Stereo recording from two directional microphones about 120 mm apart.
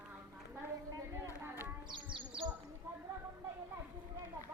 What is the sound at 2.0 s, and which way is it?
Speech, 45° right (ahead or behind).